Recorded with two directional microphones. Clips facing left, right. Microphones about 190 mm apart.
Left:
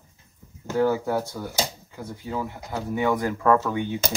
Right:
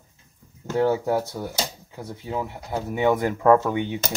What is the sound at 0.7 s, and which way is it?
Speech, 20° right (ahead or behind).